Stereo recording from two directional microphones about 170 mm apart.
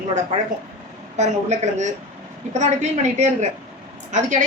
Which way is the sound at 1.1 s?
40° right (ahead or behind).